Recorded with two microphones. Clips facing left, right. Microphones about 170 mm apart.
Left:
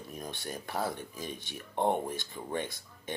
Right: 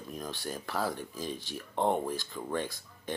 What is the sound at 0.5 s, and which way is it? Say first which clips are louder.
Speech: even; 20° left (ahead or behind).